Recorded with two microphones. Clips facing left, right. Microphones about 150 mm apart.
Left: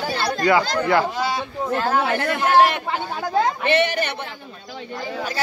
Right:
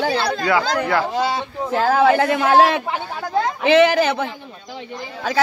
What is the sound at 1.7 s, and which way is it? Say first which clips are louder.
Speech: right 6 dB; 90° right.